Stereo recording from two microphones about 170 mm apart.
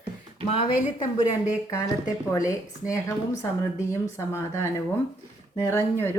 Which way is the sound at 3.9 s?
15° left (ahead or behind).